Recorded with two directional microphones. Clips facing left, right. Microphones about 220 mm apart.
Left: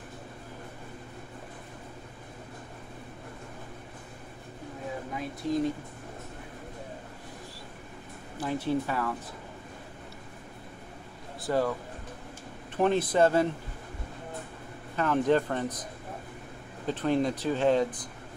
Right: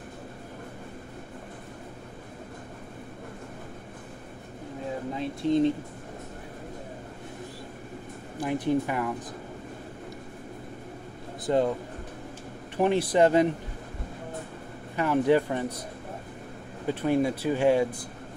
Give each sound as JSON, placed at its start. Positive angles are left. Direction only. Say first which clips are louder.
{"t": 5.1, "sound": "speech", "louder": "right 5 dB", "side_deg": -25}
{"t": 8.4, "sound": "speech", "louder": "right 3 dB", "side_deg": -15}
{"t": 11.4, "sound": "speech", "louder": "right 3 dB", "side_deg": -20}
{"t": 12.7, "sound": "speech", "louder": "right 2 dB", "side_deg": -15}
{"t": 15.0, "sound": "speech", "louder": "right 2 dB", "side_deg": -10}
{"t": 16.8, "sound": "speech", "louder": "right 2 dB", "side_deg": -10}